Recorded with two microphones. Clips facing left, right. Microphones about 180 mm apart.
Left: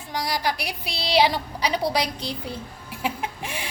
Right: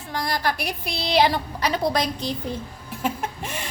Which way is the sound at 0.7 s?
50° right (ahead or behind).